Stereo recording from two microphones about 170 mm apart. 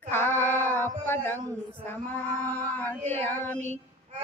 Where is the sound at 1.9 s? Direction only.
10° left (ahead or behind).